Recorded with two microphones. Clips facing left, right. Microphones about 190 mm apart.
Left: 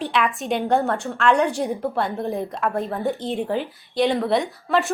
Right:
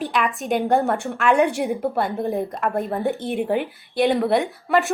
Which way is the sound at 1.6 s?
5° right (ahead or behind).